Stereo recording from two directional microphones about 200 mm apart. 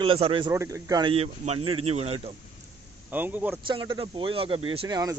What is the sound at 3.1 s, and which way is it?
Speech, 10° right (ahead or behind).